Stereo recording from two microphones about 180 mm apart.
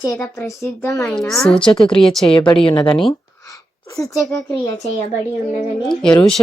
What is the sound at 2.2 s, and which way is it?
A woman's voice, 30° left (ahead or behind).